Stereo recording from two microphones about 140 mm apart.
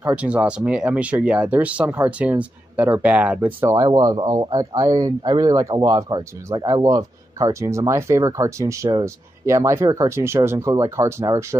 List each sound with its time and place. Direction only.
0.0 s speech: 10° right (ahead or behind)